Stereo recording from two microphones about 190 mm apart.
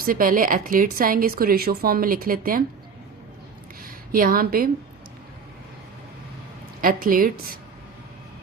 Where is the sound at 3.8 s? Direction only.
50° right (ahead or behind).